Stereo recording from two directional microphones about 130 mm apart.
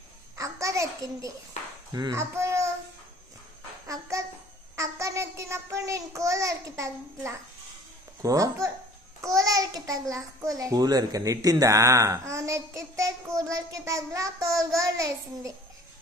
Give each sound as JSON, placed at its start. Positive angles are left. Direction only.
{"t": 0.4, "sound": "a sound", "side_deg": -25}
{"t": 1.9, "sound": "a child's voice", "side_deg": -30}
{"t": 2.3, "sound": "a sound", "side_deg": -20}
{"t": 3.8, "sound": "babbling", "side_deg": -25}
{"t": 4.7, "sound": "child singing", "side_deg": -25}
{"t": 8.2, "sound": "a child's voice", "side_deg": -25}